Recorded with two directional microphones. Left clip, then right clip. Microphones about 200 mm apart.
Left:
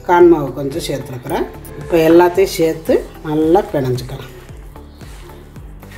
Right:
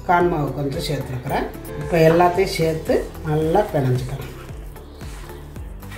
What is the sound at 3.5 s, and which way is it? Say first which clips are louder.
Speech: left 4 dB; 45° left (ahead or behind).